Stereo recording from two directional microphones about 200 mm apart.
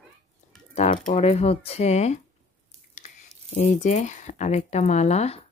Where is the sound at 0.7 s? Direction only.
30° left (ahead or behind).